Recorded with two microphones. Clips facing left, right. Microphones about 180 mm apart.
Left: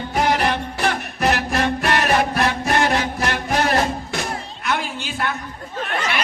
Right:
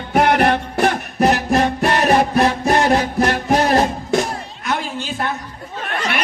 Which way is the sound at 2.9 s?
40° right (ahead or behind).